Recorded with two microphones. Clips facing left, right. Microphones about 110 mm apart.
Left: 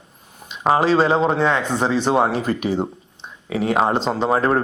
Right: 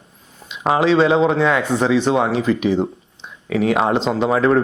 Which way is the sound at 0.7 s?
40° left (ahead or behind).